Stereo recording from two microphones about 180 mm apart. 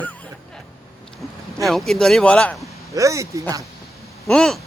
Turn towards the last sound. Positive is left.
turn(degrees=0)  # may be behind; listen again after turning